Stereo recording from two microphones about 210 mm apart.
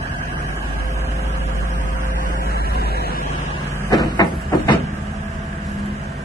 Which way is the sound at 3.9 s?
20° left (ahead or behind).